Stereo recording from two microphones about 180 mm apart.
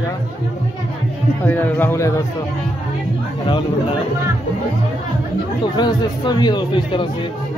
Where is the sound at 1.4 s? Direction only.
10° left (ahead or behind).